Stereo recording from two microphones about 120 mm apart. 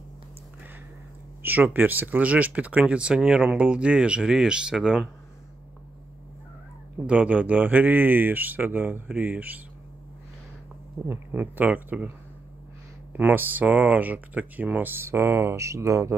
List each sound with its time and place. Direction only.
1.4 s speech: 15° right (ahead or behind)
7.1 s speech: 10° right (ahead or behind)
11.1 s speech: 15° right (ahead or behind)
13.1 s speech: 15° right (ahead or behind)